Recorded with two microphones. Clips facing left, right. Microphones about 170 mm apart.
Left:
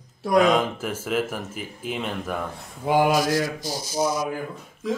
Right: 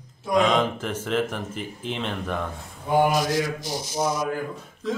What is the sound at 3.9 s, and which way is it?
Speech, 5° left (ahead or behind).